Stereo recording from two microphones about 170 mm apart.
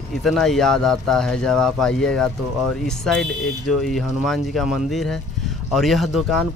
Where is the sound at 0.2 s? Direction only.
Centre (ahead or behind).